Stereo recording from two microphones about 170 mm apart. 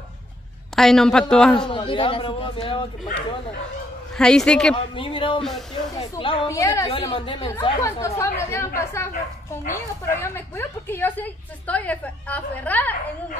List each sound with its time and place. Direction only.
0.7 s a man's voice: centre (ahead or behind)
1.7 s speech: 30° left (ahead or behind)
4.2 s a man's voice: 5° left (ahead or behind)
4.9 s a woman's voice: 30° left (ahead or behind)
6.5 s a woman's voice: 15° left (ahead or behind)
6.9 s speech: 30° left (ahead or behind)
7.8 s a woman's voice: 15° left (ahead or behind)